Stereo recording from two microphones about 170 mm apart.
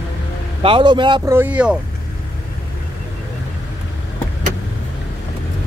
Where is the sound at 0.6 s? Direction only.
30° right (ahead or behind).